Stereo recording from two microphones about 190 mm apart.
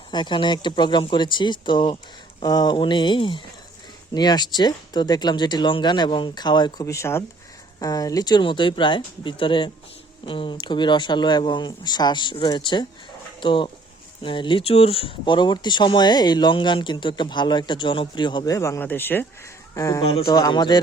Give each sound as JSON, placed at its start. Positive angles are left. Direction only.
{"t": 0.1, "sound": "speech", "side_deg": 25}
{"t": 20.0, "sound": "speech", "side_deg": 30}